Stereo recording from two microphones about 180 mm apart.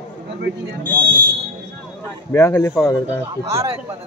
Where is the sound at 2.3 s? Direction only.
15° left (ahead or behind).